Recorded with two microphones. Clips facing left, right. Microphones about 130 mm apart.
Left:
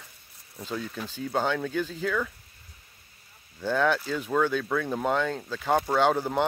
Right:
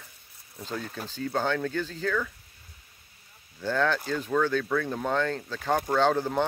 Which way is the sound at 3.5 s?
5° left (ahead or behind).